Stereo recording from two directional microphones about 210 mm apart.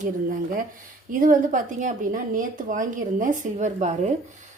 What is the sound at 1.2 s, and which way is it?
A woman's voice, 40° right (ahead or behind).